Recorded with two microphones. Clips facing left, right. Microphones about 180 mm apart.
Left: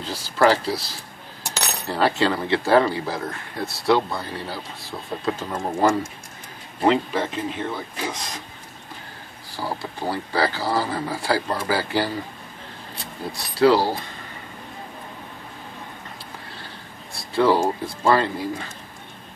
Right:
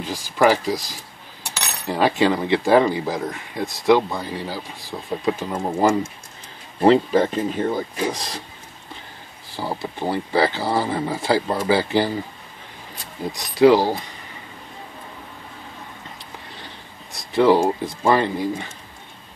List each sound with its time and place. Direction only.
0.0 s speech: 15° right (ahead or behind)
6.8 s speech: 35° right (ahead or behind)
9.6 s speech: 20° right (ahead or behind)
13.3 s speech: 15° right (ahead or behind)
16.6 s speech: 20° right (ahead or behind)